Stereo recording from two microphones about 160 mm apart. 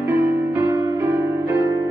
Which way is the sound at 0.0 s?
15° right (ahead or behind).